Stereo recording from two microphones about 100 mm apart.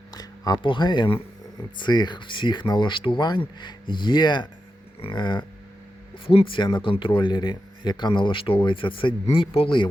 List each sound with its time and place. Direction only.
0.1 s speech: 40° left (ahead or behind)
4.9 s speech: 60° left (ahead or behind)
6.2 s speech: 65° left (ahead or behind)